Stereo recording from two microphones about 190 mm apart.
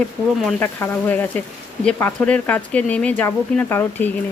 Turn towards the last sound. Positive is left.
turn(degrees=10)  # may be behind; listen again after turning